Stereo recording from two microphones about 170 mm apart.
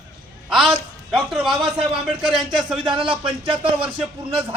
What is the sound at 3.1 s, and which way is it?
Speech, 30° right (ahead or behind).